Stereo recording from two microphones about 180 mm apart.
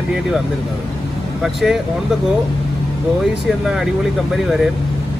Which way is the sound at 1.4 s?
Centre (ahead or behind).